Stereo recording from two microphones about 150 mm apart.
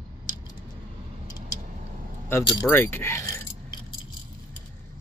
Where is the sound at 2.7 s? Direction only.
15° left (ahead or behind).